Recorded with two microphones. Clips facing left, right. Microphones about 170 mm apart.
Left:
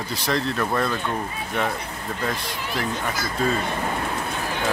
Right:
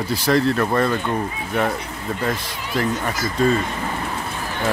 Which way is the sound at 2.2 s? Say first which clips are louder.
Right 3 dB; centre (ahead or behind).